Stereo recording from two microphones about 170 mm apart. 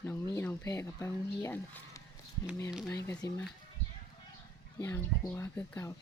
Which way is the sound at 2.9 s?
20° left (ahead or behind).